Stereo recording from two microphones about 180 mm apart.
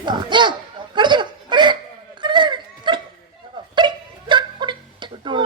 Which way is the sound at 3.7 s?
25° right (ahead or behind).